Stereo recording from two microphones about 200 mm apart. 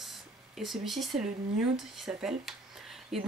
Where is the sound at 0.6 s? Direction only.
Centre (ahead or behind).